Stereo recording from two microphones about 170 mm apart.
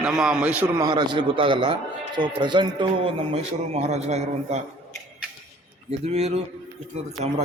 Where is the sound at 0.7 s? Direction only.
25° right (ahead or behind); by 4.6 s 40° right (ahead or behind).